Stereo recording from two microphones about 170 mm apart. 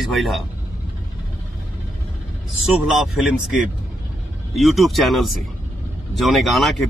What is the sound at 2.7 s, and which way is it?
A man's voice, 5° right (ahead or behind).